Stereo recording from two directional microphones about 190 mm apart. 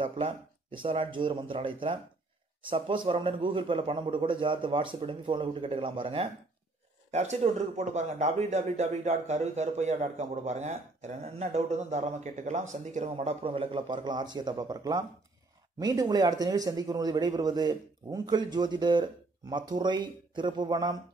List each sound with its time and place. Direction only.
0.0 s a man's voice: 25° right (ahead or behind)